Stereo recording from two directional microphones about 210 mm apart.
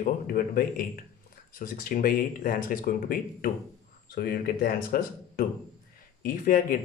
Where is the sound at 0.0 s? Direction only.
45° left (ahead or behind).